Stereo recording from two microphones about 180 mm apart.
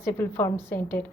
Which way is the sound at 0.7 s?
50° left (ahead or behind).